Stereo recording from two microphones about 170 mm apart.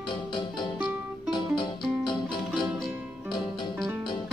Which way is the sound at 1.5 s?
25° left (ahead or behind).